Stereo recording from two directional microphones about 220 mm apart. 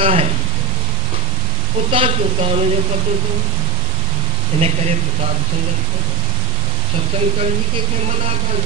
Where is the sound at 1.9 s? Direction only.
25° right (ahead or behind).